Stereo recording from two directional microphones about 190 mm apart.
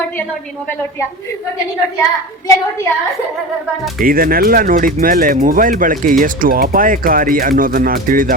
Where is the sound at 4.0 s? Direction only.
50° right (ahead or behind).